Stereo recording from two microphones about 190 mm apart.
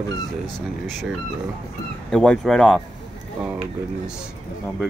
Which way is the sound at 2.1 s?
5° left (ahead or behind).